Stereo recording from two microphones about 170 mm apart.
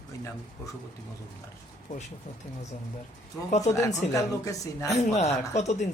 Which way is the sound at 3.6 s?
20° left (ahead or behind).